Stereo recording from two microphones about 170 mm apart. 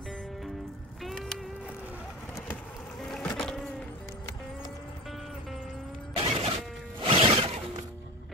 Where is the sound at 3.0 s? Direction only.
5° left (ahead or behind).